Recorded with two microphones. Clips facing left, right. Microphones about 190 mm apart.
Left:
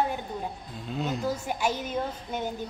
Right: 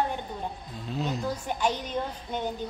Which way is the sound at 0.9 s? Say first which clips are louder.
Left 1 dB; centre (ahead or behind).